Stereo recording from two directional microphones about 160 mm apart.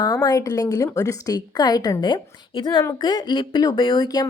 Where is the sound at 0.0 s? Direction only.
25° left (ahead or behind).